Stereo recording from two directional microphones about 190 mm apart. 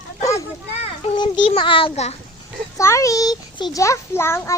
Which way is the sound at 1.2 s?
25° left (ahead or behind).